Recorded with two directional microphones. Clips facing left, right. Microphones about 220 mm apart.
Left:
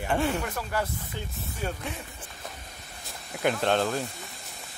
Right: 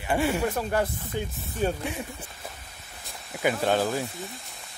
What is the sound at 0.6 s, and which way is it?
Speech, 25° right (ahead or behind).